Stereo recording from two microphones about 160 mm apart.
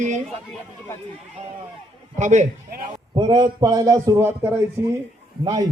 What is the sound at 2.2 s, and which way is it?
Speech, 50° right (ahead or behind).